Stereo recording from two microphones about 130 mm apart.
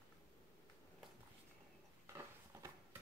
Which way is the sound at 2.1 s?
20° right (ahead or behind).